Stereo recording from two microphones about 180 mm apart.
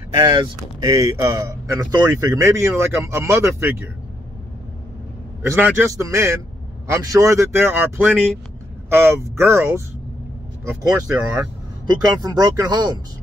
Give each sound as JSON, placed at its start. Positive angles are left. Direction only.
{"t": 0.2, "sound": "speech", "side_deg": -25}
{"t": 5.4, "sound": "speech", "side_deg": -10}